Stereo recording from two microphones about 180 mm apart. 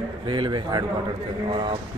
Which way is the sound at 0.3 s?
25° right (ahead or behind).